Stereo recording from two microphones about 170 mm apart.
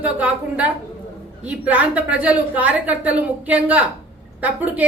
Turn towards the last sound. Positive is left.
turn(degrees=-10)  # may be behind; listen again after turning